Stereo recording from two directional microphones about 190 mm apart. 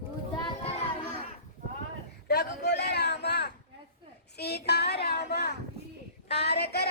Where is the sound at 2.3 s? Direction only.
60° left (ahead or behind).